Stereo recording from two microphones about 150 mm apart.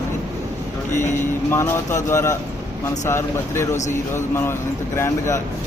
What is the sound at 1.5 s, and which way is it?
A man's voice, 15° left (ahead or behind).